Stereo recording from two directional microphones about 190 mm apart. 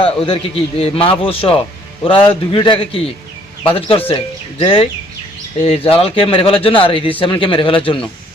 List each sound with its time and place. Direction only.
0.0 s speech: 30° left (ahead or behind)